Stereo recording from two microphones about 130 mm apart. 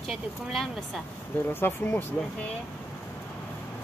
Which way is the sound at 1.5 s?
15° left (ahead or behind).